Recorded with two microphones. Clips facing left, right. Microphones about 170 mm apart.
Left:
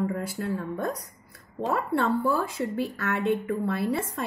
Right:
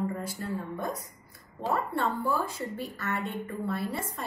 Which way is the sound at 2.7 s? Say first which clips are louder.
Left 5 dB; 70° left (ahead or behind).